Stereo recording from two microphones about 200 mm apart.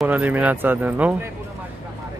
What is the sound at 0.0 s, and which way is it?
Speech, 10° right (ahead or behind).